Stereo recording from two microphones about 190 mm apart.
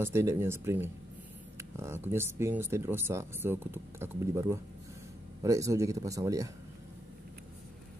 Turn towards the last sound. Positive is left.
turn(degrees=-15)  # may be behind; listen again after turning